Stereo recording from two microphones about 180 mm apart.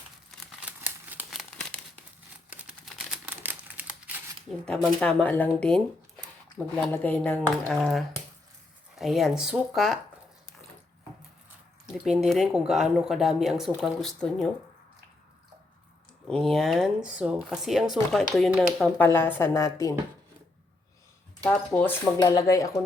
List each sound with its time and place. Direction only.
0.3 s crumpling: centre (ahead or behind)
4.6 s speech: 5° left (ahead or behind)
12.0 s speech: centre (ahead or behind)
16.2 s speech: centre (ahead or behind); by 20.0 s 15° left (ahead or behind)
21.4 s speech: 10° left (ahead or behind)
22.2 s speech: 20° left (ahead or behind)